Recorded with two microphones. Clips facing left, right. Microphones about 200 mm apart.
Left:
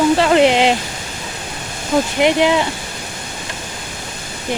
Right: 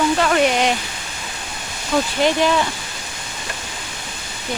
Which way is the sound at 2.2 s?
15° left (ahead or behind).